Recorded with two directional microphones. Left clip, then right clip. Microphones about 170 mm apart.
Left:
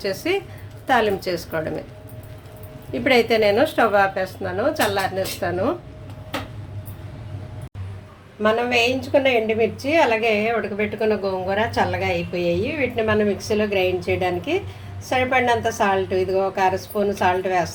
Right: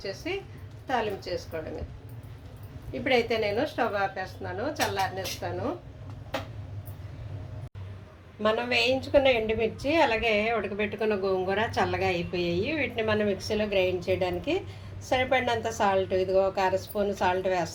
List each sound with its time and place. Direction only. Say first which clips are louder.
0.0 s a woman's voice: left 11 dB; 40° left (ahead or behind)
2.9 s a woman's voice: left 8 dB; 30° left (ahead or behind)
8.4 s a woman's voice: left 7 dB; centre (ahead or behind)